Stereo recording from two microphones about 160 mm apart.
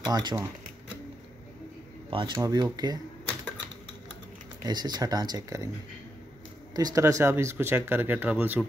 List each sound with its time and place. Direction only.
0.0 s speech: 25° right (ahead or behind)
2.0 s speech: 30° right (ahead or behind)
4.6 s speech: 25° right (ahead or behind)
6.7 s speech: 25° right (ahead or behind)